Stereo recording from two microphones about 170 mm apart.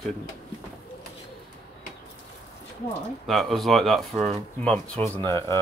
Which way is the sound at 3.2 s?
Centre (ahead or behind).